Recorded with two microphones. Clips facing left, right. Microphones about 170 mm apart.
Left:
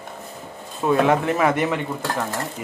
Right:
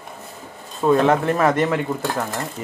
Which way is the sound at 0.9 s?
10° left (ahead or behind).